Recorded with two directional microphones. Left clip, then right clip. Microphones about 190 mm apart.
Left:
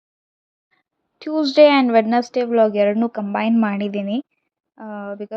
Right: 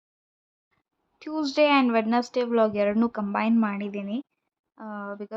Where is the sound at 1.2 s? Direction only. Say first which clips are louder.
Left 10 dB; 20° left (ahead or behind).